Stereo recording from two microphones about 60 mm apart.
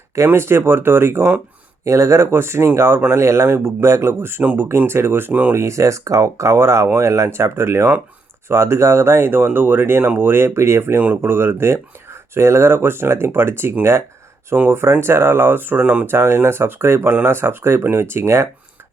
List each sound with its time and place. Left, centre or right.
0.3 s speech: right
1.8 s speech: right
5.3 s speech: right
5.5 s speech: right
16.2 s speech: right